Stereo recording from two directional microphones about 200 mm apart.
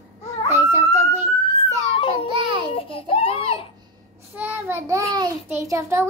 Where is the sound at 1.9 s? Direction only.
25° left (ahead or behind).